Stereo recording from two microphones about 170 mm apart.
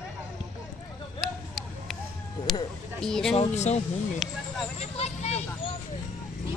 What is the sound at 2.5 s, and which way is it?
Speech, centre (ahead or behind).